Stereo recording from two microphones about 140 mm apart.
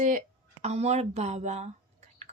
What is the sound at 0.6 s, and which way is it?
Speech, 50° right (ahead or behind).